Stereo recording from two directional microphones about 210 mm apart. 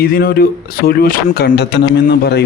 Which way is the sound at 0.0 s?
45° left (ahead or behind).